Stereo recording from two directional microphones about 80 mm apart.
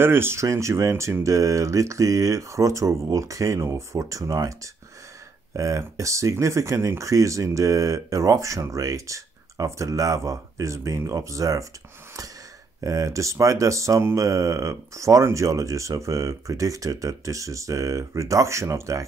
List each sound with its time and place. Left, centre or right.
0.0 s speech: right
12.8 s speech: right